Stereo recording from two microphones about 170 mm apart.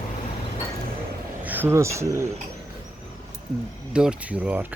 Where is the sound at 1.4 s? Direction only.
10° right (ahead or behind).